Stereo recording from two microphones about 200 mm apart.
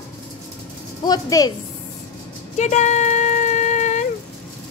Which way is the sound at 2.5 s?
35° left (ahead or behind).